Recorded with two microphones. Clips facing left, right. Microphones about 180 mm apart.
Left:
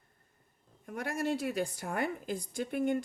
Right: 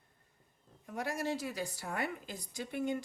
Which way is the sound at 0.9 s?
55° left (ahead or behind).